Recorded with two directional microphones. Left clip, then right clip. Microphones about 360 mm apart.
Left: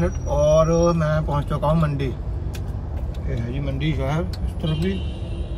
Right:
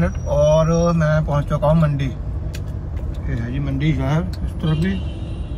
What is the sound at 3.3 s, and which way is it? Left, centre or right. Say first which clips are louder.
Speech: right 2 dB; right.